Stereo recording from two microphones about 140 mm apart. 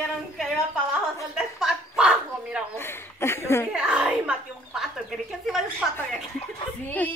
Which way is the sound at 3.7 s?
5° right (ahead or behind).